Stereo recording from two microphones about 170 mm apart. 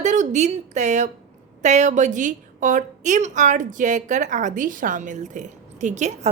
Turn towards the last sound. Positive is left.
turn(degrees=-45)  # may be behind; listen again after turning